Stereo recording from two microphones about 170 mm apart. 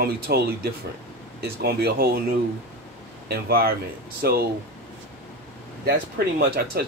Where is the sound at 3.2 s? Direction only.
65° right (ahead or behind).